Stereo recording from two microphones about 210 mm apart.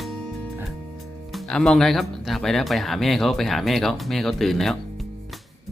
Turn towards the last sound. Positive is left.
turn(degrees=0)  # may be behind; listen again after turning